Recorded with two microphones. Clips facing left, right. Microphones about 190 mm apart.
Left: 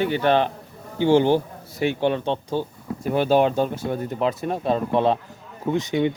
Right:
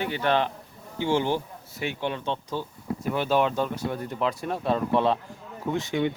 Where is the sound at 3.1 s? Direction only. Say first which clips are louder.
Left 6 dB; 35° left (ahead or behind).